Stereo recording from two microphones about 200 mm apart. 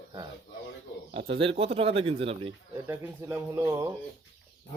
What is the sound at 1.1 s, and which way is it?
Speech, 25° right (ahead or behind).